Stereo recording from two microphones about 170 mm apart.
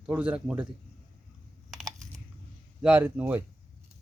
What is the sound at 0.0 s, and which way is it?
Speech, 10° right (ahead or behind).